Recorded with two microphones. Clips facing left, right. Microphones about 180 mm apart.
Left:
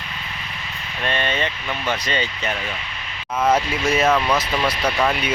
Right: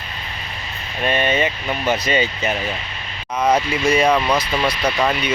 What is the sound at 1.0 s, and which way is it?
Speech, 10° right (ahead or behind).